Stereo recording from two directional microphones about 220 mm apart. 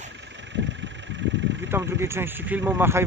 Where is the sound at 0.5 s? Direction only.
55° right (ahead or behind).